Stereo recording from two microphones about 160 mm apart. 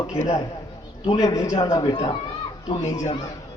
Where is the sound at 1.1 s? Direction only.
25° left (ahead or behind).